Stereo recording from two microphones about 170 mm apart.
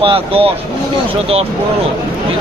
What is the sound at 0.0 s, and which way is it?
Speech, 35° right (ahead or behind).